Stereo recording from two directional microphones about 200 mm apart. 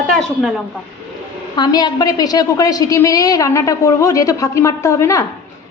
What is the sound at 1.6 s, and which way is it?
A woman's voice, 20° left (ahead or behind).